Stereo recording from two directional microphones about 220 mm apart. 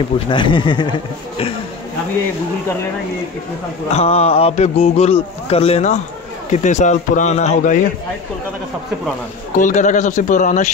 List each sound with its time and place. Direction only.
0.3 s a man's voice: 20° left (ahead or behind)
3.9 s a man's voice: 30° left (ahead or behind)
9.6 s a man's voice: 35° left (ahead or behind)